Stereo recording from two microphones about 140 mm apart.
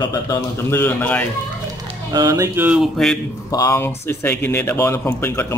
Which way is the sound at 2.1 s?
30° right (ahead or behind).